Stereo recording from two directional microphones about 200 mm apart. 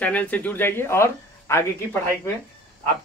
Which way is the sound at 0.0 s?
5° left (ahead or behind).